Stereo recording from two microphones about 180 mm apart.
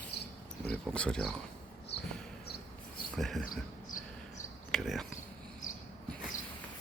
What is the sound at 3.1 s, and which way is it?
Speech, centre (ahead or behind).